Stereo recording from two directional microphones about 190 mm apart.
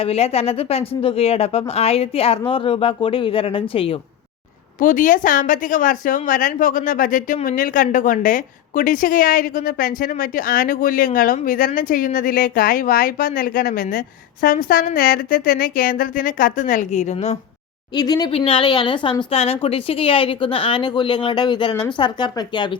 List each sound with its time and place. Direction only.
0.0 s speech: 30° left (ahead or behind)
4.8 s a woman's voice: 45° left (ahead or behind)
17.9 s a woman's voice: 20° left (ahead or behind)